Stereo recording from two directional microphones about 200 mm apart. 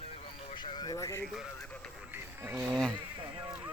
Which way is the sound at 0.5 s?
25° left (ahead or behind).